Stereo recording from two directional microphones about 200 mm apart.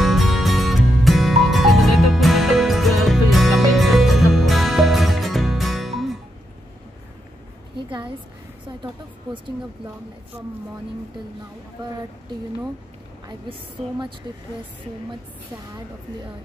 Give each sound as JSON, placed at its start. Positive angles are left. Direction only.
{"t": 0.0, "sound": "music", "side_deg": 0}
{"t": 13.5, "sound": "a woman's voice", "side_deg": -25}